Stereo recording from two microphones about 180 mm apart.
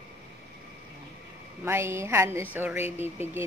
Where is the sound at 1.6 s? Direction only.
15° right (ahead or behind).